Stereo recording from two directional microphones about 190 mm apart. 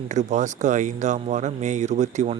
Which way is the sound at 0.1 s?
40° right (ahead or behind).